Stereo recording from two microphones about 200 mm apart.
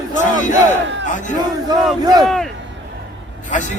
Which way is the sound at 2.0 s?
20° right (ahead or behind).